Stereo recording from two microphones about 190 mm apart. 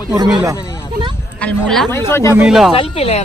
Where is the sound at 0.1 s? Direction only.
20° right (ahead or behind).